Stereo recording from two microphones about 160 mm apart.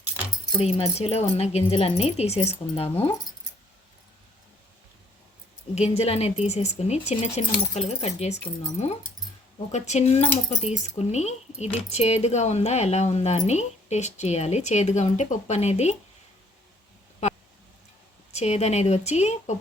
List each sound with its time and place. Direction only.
0.6 s speech: 40° left (ahead or behind)
5.7 s speech: 40° left (ahead or behind)
9.7 s speech: 45° left (ahead or behind)
18.3 s speech: 45° left (ahead or behind)